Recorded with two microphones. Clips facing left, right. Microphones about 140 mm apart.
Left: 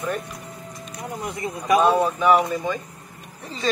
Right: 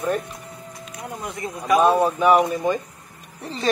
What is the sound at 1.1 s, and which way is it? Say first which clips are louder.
Speech: left 2 dB; 10° left (ahead or behind).